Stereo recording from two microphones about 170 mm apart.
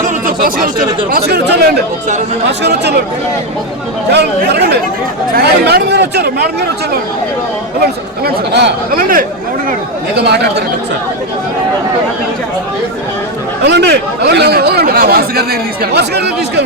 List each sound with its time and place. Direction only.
0.0 s a sound: 50° right (ahead or behind)
1.1 s speech: 70° right (ahead or behind)
2.5 s speech: 90° right
4.1 s speech: 75° right (ahead or behind)
8.2 s speech: 60° right (ahead or behind)
10.2 s speech: 75° right (ahead or behind)
13.7 s speech: 85° right